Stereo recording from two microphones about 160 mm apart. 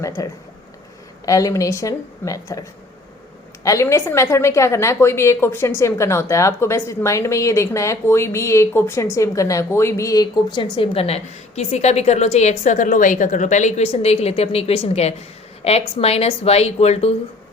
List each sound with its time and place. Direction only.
0.2 s a woman's voice: 20° left (ahead or behind); by 17.1 s 40° left (ahead or behind)